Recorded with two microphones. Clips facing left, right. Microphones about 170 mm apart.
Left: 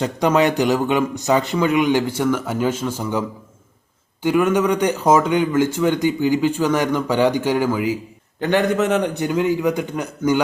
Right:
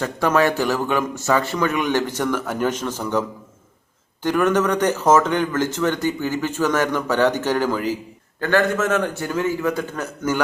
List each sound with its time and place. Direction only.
0.0 s speech: 20° left (ahead or behind)